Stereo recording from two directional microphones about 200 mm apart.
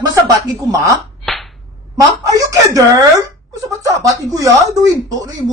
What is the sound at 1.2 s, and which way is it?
Whip, centre (ahead or behind).